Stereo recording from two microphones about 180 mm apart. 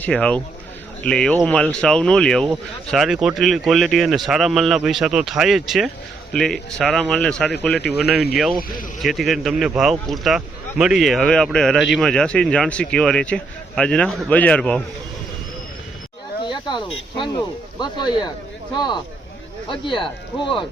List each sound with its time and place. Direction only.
0.0 s a man's voice: 5° left (ahead or behind)
16.4 s speech: 25° left (ahead or behind)
19.6 s speech: 30° left (ahead or behind)